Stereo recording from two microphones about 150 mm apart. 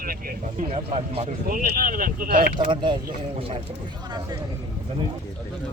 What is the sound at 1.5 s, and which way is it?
Speech, 70° right (ahead or behind).